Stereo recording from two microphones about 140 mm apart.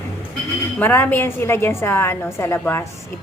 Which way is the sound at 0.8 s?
15° left (ahead or behind).